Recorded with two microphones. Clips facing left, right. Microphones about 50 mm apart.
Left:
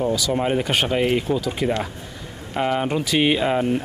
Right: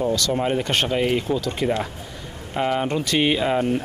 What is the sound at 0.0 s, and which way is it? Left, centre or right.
Speech, centre.